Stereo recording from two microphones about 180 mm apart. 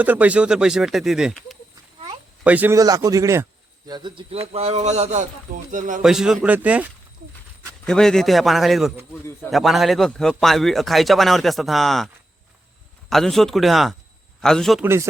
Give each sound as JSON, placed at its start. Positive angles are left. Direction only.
{"t": 0.0, "sound": "a man's voice", "side_deg": -10}
{"t": 6.0, "sound": "a man's voice", "side_deg": -5}
{"t": 7.9, "sound": "a man's voice", "side_deg": 5}